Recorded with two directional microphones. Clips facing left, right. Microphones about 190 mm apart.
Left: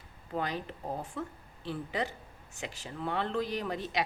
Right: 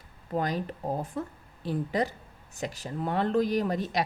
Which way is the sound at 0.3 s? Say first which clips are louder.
Right 5 dB; 40° right (ahead or behind).